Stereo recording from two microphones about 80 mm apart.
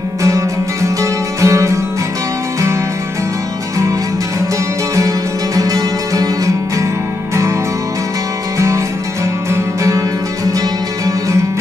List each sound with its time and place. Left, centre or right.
1.4 s music: right
4.9 s music: right
8.5 s music: right